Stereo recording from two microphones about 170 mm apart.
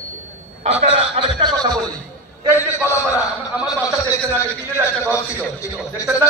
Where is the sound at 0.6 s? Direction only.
35° right (ahead or behind).